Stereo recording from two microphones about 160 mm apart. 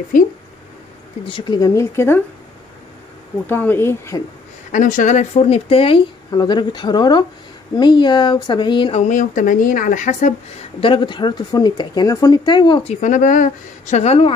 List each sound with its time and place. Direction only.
0.1 s speech: 55° left (ahead or behind)
1.2 s speech: 30° left (ahead or behind)
3.4 s speech: 10° left (ahead or behind)
4.7 s speech: 55° left (ahead or behind); by 9.0 s 30° left (ahead or behind)
9.1 s speech: 55° left (ahead or behind)
10.8 s speech: 30° left (ahead or behind)
13.0 s speech: 55° left (ahead or behind)